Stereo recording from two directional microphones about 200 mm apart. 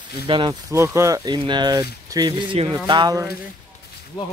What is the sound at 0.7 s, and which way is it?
A man's voice, 15° right (ahead or behind).